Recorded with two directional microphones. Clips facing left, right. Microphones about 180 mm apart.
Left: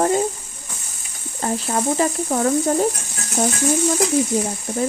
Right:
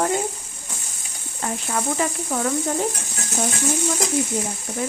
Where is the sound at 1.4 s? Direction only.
35° left (ahead or behind).